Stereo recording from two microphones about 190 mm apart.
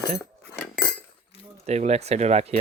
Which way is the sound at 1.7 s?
35° right (ahead or behind).